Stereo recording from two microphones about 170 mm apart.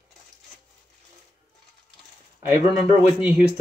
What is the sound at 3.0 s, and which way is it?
Speech, 10° right (ahead or behind).